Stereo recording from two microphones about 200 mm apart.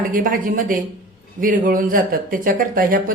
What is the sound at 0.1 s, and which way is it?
Speech, 45° right (ahead or behind).